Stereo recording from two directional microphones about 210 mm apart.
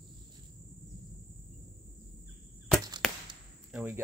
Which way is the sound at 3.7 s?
10° right (ahead or behind).